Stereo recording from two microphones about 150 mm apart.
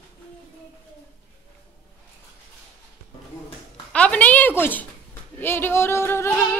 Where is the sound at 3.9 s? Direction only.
10° left (ahead or behind).